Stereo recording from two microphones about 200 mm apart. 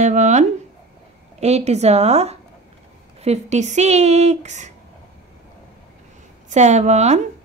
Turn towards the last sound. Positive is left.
turn(degrees=-35)  # may be behind; listen again after turning